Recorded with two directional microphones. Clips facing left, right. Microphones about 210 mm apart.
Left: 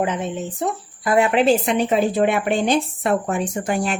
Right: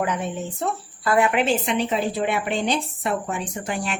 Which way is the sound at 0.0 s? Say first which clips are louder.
Left 3 dB; 20° left (ahead or behind).